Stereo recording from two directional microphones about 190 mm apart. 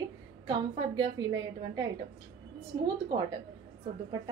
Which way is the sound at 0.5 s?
20° right (ahead or behind).